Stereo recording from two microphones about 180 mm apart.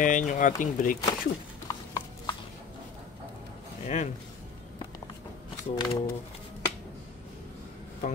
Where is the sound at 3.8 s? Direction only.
40° left (ahead or behind).